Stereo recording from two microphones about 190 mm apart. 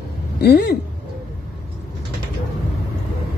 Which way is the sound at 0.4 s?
55° left (ahead or behind).